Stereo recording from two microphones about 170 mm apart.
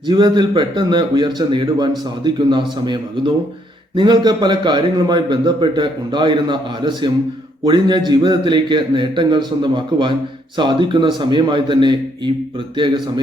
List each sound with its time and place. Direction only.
0.1 s a man's voice: 25° right (ahead or behind)